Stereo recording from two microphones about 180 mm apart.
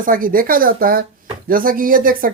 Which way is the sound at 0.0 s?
50° right (ahead or behind).